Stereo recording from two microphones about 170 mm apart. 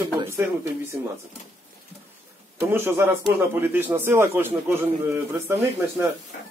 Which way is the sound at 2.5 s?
15° right (ahead or behind).